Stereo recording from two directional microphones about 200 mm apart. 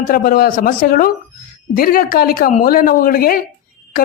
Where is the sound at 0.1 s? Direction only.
45° left (ahead or behind).